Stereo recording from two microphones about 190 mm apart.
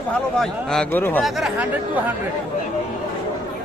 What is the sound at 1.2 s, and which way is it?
Speech, centre (ahead or behind).